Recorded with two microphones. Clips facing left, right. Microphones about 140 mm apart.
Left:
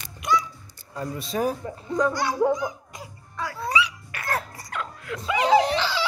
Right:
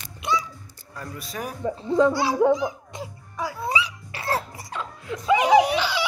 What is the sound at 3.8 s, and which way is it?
Music, 30° right (ahead or behind).